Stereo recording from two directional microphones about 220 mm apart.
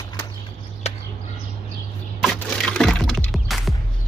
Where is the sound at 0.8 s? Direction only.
30° left (ahead or behind).